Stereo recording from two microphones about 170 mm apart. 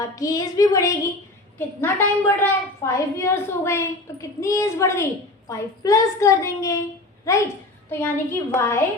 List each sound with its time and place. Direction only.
0.2 s a woman's voice: 20° left (ahead or behind)